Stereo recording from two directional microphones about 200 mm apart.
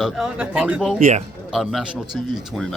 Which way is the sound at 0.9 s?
35° right (ahead or behind).